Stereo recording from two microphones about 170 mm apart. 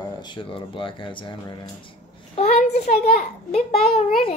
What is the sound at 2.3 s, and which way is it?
A child's voice, 40° left (ahead or behind).